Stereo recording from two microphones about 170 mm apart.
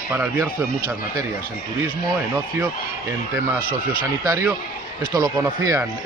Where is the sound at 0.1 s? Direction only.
10° right (ahead or behind).